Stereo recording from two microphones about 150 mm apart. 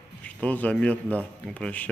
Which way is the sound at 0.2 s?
10° left (ahead or behind).